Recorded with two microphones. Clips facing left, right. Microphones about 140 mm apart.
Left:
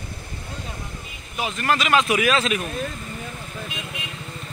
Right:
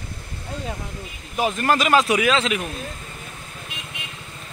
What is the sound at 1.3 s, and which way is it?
Speech, 40° right (ahead or behind).